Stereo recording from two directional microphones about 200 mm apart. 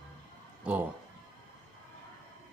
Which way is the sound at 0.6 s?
5° right (ahead or behind).